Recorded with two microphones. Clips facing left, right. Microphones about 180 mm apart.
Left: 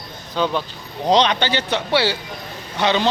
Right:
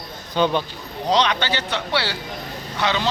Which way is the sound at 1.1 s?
25° left (ahead or behind).